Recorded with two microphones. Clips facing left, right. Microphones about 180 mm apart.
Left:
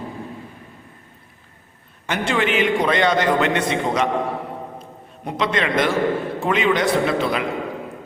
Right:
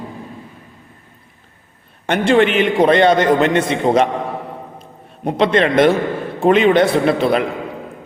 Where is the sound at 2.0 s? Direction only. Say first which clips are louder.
Right 8 dB; 55° right (ahead or behind).